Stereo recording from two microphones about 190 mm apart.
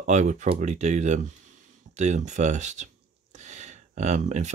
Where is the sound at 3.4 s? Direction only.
40° right (ahead or behind).